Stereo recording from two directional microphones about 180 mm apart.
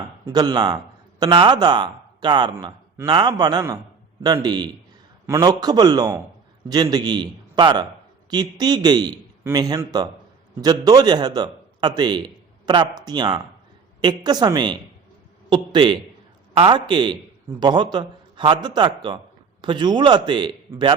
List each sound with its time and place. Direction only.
0.3 s a man's voice: 20° right (ahead or behind)